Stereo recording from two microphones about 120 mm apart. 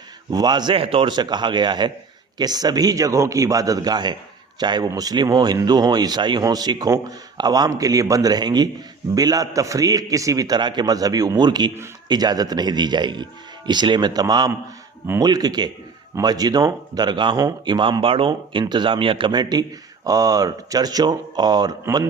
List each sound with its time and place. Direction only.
0.3 s speech: 35° right (ahead or behind)
0.8 s speech: 50° right (ahead or behind); by 21.8 s 35° right (ahead or behind)